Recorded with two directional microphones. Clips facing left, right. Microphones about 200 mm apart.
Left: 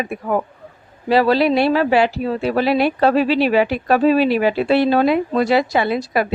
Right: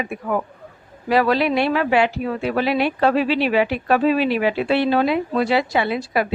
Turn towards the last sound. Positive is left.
turn(degrees=40)  # may be behind; listen again after turning